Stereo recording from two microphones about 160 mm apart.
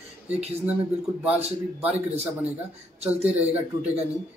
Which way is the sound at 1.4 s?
40° right (ahead or behind).